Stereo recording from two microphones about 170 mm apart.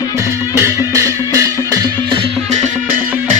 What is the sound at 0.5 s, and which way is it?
Music, 15° right (ahead or behind).